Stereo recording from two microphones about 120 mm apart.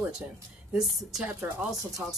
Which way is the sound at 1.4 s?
25° right (ahead or behind).